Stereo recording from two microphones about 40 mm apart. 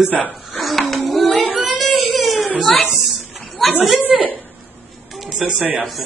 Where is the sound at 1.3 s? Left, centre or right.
Left.